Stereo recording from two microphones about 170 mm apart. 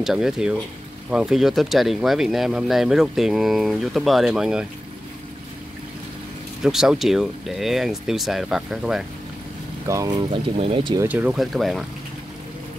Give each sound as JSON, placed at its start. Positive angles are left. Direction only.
{"t": 0.0, "sound": "speech", "side_deg": -5}
{"t": 6.6, "sound": "speech", "side_deg": -5}
{"t": 9.8, "sound": "speech", "side_deg": -20}
{"t": 10.4, "sound": "speech", "side_deg": -30}
{"t": 11.1, "sound": "speech", "side_deg": -10}